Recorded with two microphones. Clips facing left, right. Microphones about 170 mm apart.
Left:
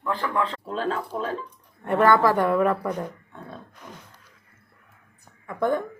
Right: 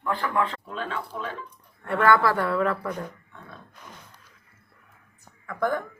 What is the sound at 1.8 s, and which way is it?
Speech, 25° left (ahead or behind).